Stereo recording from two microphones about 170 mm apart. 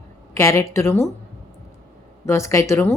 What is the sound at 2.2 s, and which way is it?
Speech, 15° left (ahead or behind).